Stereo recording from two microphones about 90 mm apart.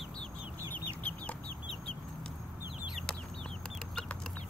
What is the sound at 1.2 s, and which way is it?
Chicken, 15° left (ahead or behind).